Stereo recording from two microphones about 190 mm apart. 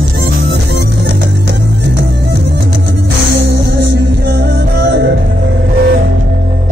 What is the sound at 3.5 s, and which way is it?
Music, 60° right (ahead or behind).